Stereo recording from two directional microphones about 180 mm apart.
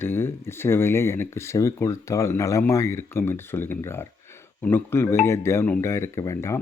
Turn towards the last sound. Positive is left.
turn(degrees=15)  # may be behind; listen again after turning